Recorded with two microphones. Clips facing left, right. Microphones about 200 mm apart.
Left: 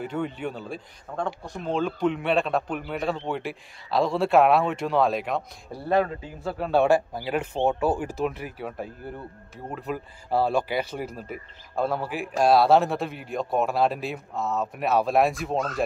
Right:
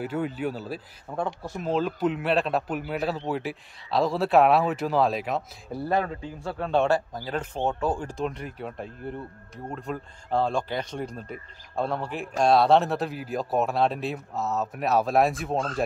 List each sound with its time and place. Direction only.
0.0 s speech: 5° right (ahead or behind)
15.5 s speech: 30° right (ahead or behind)